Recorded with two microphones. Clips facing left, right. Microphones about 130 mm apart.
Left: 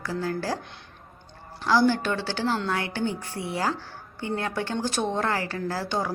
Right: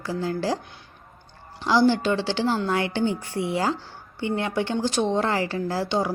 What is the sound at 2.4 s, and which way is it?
Speech, 10° right (ahead or behind).